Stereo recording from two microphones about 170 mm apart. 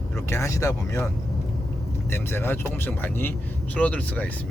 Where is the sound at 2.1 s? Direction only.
15° left (ahead or behind).